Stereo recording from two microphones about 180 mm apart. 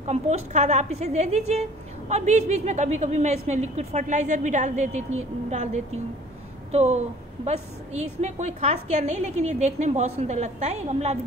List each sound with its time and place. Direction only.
0.0 s a woman's voice: 35° right (ahead or behind)